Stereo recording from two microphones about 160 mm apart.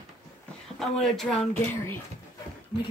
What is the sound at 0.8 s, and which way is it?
Speech, centre (ahead or behind).